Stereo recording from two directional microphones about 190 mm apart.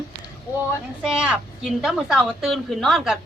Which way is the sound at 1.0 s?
5° right (ahead or behind).